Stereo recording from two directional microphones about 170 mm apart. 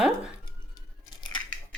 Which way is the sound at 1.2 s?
25° left (ahead or behind).